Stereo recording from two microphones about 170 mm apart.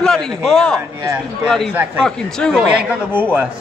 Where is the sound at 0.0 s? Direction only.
5° left (ahead or behind).